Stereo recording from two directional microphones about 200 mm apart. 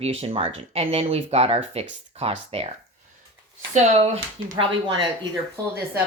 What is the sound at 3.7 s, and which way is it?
Speech, 35° right (ahead or behind).